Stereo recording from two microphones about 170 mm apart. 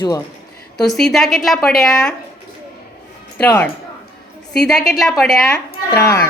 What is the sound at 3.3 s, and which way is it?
A woman's voice, 10° left (ahead or behind).